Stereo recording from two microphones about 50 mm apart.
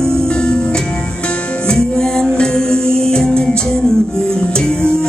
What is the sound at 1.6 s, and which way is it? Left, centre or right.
Music, centre.